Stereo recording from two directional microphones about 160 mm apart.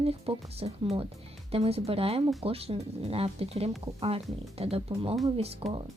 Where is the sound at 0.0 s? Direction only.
40° right (ahead or behind).